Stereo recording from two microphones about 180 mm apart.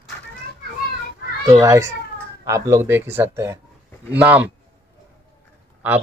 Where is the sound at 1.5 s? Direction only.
15° right (ahead or behind).